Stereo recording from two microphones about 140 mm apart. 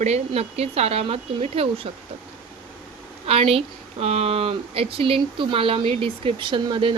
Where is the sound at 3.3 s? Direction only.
45° right (ahead or behind).